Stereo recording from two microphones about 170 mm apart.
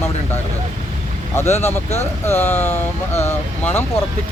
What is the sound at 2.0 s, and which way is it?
Speech, 15° left (ahead or behind).